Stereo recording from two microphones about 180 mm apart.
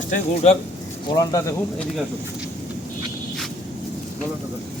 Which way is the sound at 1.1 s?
20° left (ahead or behind).